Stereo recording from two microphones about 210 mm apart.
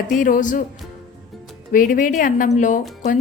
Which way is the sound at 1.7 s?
40° left (ahead or behind).